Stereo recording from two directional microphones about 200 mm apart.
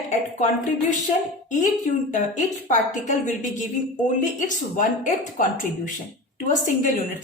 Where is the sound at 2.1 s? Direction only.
40° left (ahead or behind).